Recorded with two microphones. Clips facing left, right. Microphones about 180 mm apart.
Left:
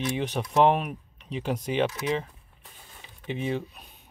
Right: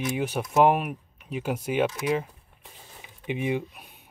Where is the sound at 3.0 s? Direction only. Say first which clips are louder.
Right 2 dB; 15° right (ahead or behind).